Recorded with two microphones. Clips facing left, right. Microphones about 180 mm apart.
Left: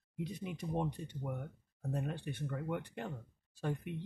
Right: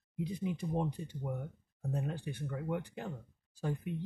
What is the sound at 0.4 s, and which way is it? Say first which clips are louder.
Speech: right 3 dB; centre (ahead or behind).